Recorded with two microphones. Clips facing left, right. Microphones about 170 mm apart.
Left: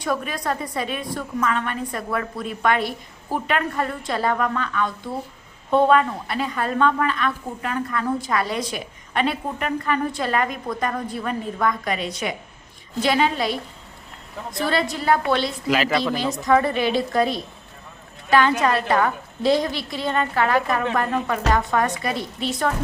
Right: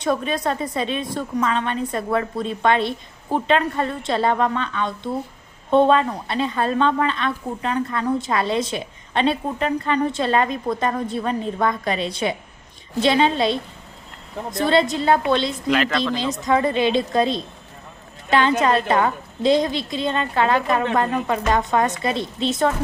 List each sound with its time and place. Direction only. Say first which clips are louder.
0.0 s a woman's voice: right 4 dB; 25° right (ahead or behind)
15.6 s a man's voice: right 1 dB; 5° left (ahead or behind)
16.1 s a woman's voice: left 2 dB; 20° right (ahead or behind)